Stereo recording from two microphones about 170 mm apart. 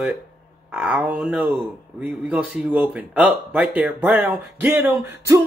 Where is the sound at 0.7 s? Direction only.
5° right (ahead or behind).